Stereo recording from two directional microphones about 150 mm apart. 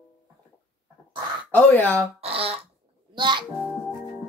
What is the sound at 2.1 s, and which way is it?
A child's voice, 40° right (ahead or behind).